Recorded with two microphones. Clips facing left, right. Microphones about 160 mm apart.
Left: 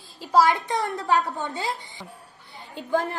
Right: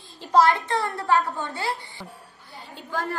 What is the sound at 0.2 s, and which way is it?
A woman's voice, 10° left (ahead or behind).